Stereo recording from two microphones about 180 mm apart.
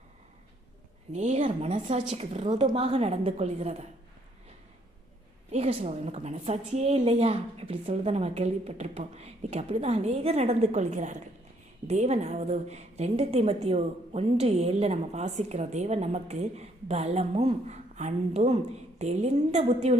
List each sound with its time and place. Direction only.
1.1 s a woman's voice: 40° right (ahead or behind)
5.5 s a woman's voice: 35° right (ahead or behind)